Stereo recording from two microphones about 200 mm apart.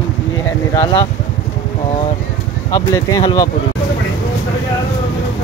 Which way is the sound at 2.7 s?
20° left (ahead or behind).